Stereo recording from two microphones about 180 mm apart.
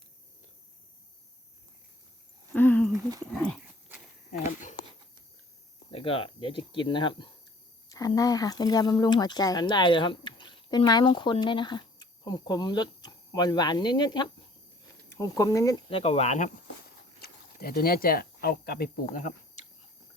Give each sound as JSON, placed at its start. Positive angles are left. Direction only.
{"t": 2.5, "sound": "a sound", "side_deg": 10}
{"t": 3.3, "sound": "dog", "side_deg": 5}
{"t": 4.3, "sound": "a sound", "side_deg": 45}
{"t": 5.9, "sound": "speech", "side_deg": 30}
{"t": 15.9, "sound": "speech", "side_deg": 30}
{"t": 17.2, "sound": "speech", "side_deg": 60}